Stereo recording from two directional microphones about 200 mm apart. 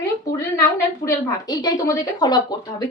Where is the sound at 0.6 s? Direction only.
15° left (ahead or behind).